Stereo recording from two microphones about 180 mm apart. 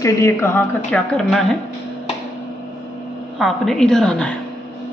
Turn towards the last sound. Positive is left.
turn(degrees=5)  # may be behind; listen again after turning